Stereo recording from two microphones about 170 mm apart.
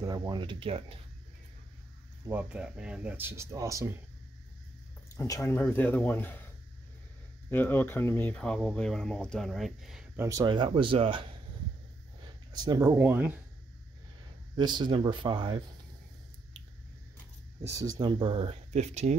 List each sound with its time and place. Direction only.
0.0 s speech: 20° right (ahead or behind)
2.2 s speech: 10° right (ahead or behind)
5.1 s speech: 20° left (ahead or behind)
7.4 s speech: 15° left (ahead or behind)
10.1 s speech: 20° right (ahead or behind)
12.5 s speech: 20° right (ahead or behind)
14.5 s speech: 25° right (ahead or behind)
17.7 s speech: 25° right (ahead or behind); by 19.1 s 40° right (ahead or behind)